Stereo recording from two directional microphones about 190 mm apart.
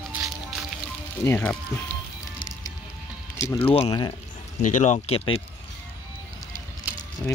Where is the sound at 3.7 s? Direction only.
30° left (ahead or behind).